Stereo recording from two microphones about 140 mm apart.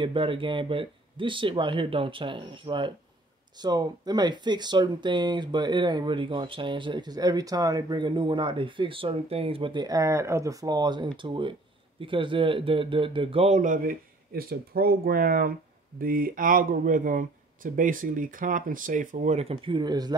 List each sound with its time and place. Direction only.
0.0 s speech: 40° right (ahead or behind)
13.6 s speech: 70° right (ahead or behind); by 19.5 s 50° right (ahead or behind)
19.5 s speech: 35° right (ahead or behind)